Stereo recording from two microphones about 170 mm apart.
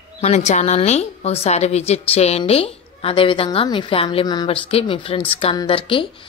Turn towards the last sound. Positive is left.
turn(degrees=30)  # may be behind; listen again after turning